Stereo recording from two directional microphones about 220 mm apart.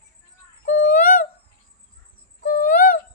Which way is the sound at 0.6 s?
35° left (ahead or behind).